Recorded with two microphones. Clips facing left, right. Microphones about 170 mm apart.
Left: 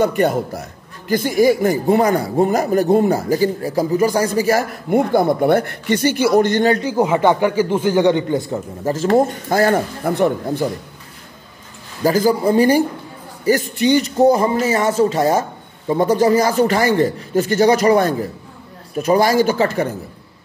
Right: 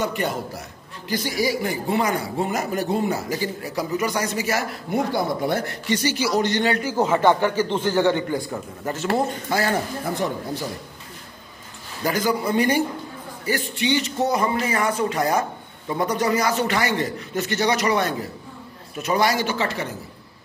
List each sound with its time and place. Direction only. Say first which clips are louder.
0.0 s a man's voice: left 9 dB; 50° left (ahead or behind)
4.9 s speech: left 8 dB; 55° left (ahead or behind)
6.8 s speech: left 4 dB; 15° left (ahead or behind)
8.9 s a man's voice: left 8 dB; 45° left (ahead or behind)
12.0 s a man's voice: left 7 dB; 35° left (ahead or behind)
13.5 s a man's voice: left 8 dB; 45° left (ahead or behind)
14.3 s a man's voice: left 6 dB; 30° left (ahead or behind); by 19.9 s 45° left (ahead or behind)